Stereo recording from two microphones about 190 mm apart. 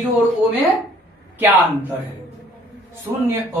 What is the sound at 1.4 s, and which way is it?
Speech, 10° right (ahead or behind).